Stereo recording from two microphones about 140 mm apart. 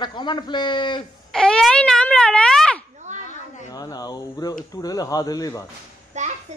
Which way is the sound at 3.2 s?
60° left (ahead or behind).